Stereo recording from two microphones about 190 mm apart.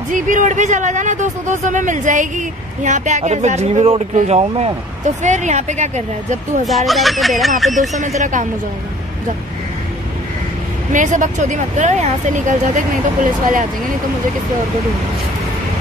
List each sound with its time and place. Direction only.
0.1 s speech: 45° right (ahead or behind)
6.6 s speech: centre (ahead or behind)
7.9 s speech: 40° right (ahead or behind)
10.9 s speech: 40° right (ahead or behind)